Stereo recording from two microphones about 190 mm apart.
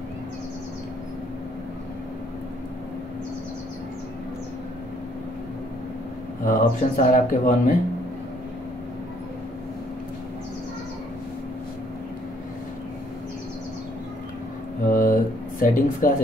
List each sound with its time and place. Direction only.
6.4 s speech: 45° left (ahead or behind)
14.9 s a sound: 45° left (ahead or behind)
15.6 s speech: 45° left (ahead or behind)